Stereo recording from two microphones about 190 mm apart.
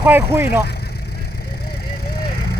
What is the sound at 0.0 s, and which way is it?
Speech, 10° right (ahead or behind).